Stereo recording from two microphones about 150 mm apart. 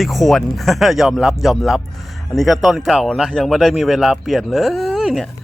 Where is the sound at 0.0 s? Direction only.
Centre (ahead or behind).